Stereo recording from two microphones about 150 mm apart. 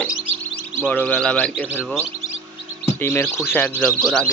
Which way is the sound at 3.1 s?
15° left (ahead or behind).